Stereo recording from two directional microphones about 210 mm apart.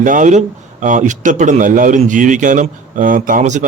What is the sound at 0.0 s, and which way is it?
Speech, 40° right (ahead or behind).